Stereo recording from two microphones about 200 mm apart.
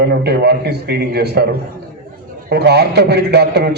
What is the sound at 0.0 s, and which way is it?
A man's voice, 55° right (ahead or behind).